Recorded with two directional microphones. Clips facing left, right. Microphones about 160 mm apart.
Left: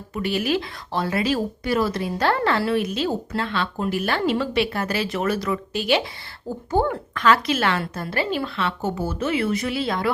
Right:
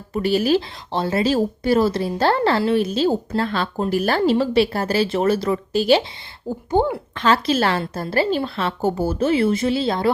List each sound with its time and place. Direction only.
0.1 s speech: 35° right (ahead or behind)
6.7 s a woman's voice: 15° right (ahead or behind)